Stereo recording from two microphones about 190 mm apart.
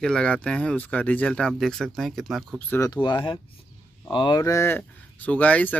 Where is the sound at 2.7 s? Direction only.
15° left (ahead or behind).